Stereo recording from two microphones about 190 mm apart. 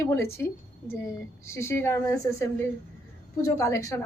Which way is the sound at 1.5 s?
15° left (ahead or behind).